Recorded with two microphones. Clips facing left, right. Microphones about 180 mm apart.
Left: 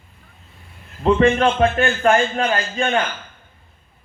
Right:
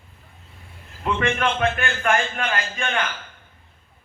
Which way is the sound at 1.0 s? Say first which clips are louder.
Left 8 dB; 35° left (ahead or behind).